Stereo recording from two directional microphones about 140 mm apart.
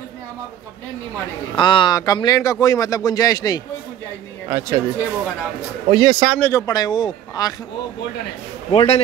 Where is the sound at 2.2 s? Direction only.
25° left (ahead or behind).